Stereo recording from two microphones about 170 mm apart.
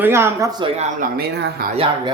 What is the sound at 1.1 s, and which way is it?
Speech, 75° right (ahead or behind).